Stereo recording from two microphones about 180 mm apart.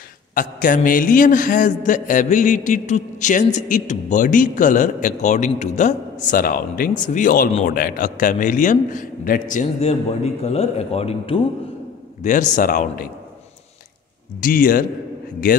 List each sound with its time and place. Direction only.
0.3 s a man's voice: 50° left (ahead or behind); by 11.4 s 30° left (ahead or behind)
12.2 s a man's voice: 45° left (ahead or behind)
14.4 s a man's voice: 50° left (ahead or behind)